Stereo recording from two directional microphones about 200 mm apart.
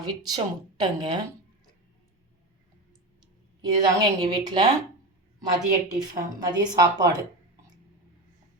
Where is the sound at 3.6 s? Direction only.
20° right (ahead or behind).